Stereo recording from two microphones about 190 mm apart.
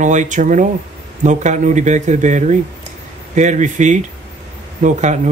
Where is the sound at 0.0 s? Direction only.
40° right (ahead or behind).